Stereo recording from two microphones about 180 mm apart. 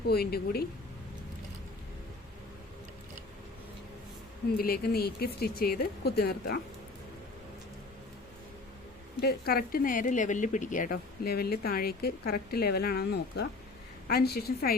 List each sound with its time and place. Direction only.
0.1 s speech: 60° left (ahead or behind)
4.5 s speech: 55° left (ahead or behind)
9.2 s speech: 60° left (ahead or behind)